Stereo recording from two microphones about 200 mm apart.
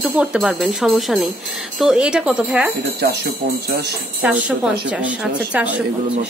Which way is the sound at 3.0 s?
55° right (ahead or behind).